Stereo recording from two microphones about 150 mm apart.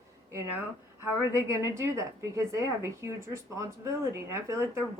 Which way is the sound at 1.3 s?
20° right (ahead or behind).